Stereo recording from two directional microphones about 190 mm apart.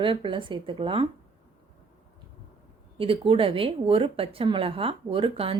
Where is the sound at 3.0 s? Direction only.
30° right (ahead or behind).